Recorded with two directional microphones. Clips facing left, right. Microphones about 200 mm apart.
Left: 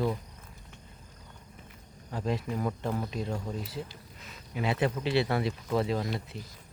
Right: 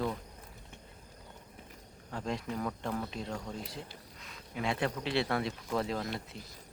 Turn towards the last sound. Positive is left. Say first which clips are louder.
# left 4 dB
turn(degrees=5)  # may be behind; listen again after turning